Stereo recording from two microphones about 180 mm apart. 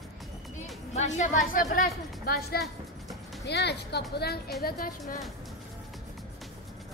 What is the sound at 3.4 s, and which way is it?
A woman's voice, 70° left (ahead or behind).